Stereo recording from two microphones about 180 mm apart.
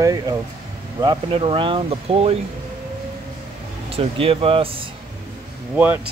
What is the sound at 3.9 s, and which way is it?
Speech, 30° right (ahead or behind).